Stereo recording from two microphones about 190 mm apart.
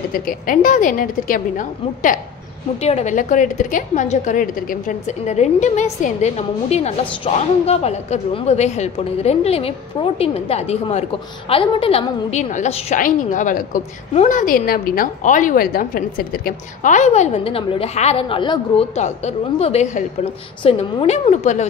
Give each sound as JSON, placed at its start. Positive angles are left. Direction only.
{"t": 0.1, "sound": "a woman's voice", "side_deg": 45}
{"t": 2.8, "sound": "a woman's voice", "side_deg": 35}